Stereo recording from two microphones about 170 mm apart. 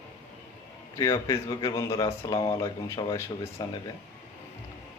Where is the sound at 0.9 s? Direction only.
15° left (ahead or behind).